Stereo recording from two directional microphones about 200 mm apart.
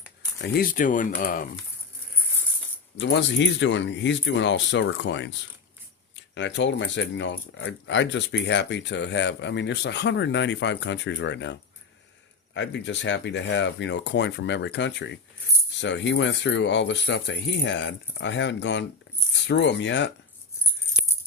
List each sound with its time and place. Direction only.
0.4 s speech: 50° left (ahead or behind)
3.0 s speech: 65° left (ahead or behind)